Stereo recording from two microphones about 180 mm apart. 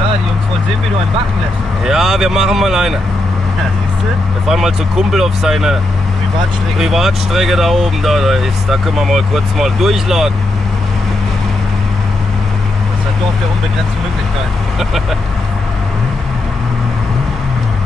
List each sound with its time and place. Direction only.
1.9 s speech: centre (ahead or behind)
4.5 s speech: centre (ahead or behind)
6.8 s speech: centre (ahead or behind)